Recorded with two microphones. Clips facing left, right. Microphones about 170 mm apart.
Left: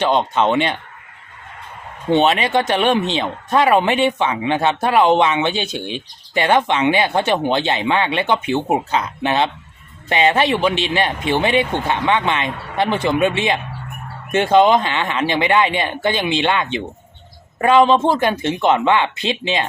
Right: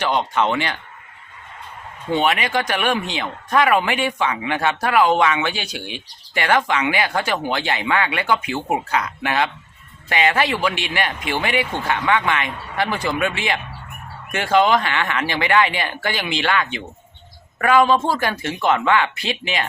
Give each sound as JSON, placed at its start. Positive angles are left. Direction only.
{"t": 0.0, "sound": "speech", "side_deg": 20}
{"t": 2.0, "sound": "speech", "side_deg": 25}